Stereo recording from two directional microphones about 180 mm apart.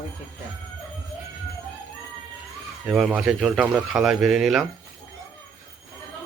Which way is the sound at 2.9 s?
5° right (ahead or behind).